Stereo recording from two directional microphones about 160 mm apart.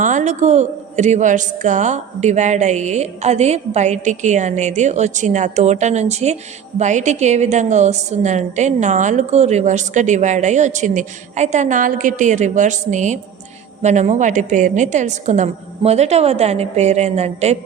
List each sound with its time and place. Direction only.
0.0 s a woman's voice: 50° right (ahead or behind)